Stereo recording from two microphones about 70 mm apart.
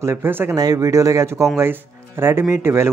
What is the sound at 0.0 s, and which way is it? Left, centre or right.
Speech, right.